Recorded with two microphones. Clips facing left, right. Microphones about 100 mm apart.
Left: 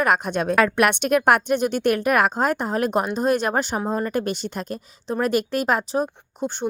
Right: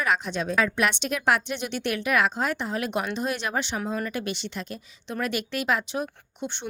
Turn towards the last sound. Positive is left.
turn(degrees=40)  # may be behind; listen again after turning